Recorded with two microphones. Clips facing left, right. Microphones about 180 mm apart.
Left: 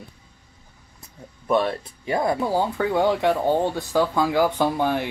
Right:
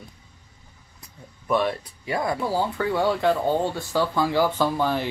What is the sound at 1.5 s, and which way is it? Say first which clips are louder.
Speech: left 2 dB; 25° left (ahead or behind).